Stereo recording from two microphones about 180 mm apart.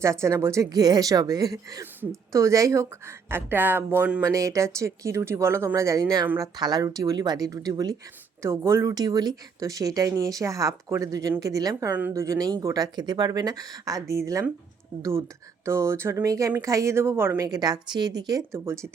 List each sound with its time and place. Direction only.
0.0 s speech: 15° right (ahead or behind)
15.6 s speech: 15° right (ahead or behind)